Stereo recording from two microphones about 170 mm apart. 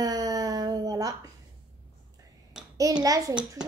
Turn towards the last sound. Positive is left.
turn(degrees=-20)  # may be behind; listen again after turning